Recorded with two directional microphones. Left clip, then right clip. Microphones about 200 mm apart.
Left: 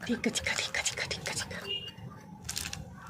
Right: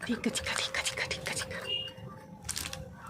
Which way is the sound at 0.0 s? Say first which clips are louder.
Left 2 dB; centre (ahead or behind).